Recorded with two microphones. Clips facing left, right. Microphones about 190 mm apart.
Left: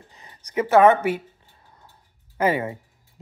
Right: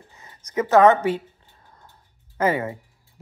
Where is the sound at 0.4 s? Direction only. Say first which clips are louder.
Even; 30° left (ahead or behind).